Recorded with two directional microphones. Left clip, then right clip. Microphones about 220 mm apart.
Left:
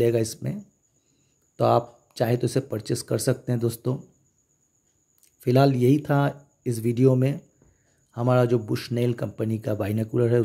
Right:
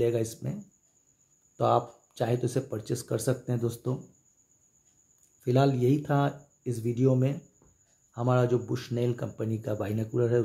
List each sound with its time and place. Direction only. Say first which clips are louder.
0.0 s speech: left 5 dB; 30° left (ahead or behind)
1.6 s speech: left 4 dB; 30° left (ahead or behind)
5.4 s speech: left 5 dB; 30° left (ahead or behind)